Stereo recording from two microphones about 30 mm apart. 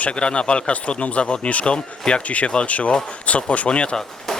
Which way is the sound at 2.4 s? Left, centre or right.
Left.